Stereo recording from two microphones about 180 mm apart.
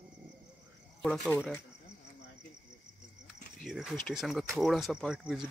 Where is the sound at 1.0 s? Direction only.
5° left (ahead or behind).